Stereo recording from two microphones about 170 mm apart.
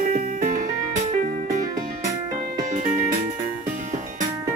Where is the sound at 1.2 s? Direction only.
45° right (ahead or behind).